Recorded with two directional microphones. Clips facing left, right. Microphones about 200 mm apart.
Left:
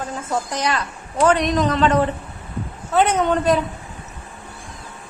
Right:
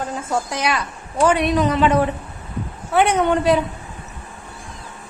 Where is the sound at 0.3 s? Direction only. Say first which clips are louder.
Even; 10° right (ahead or behind).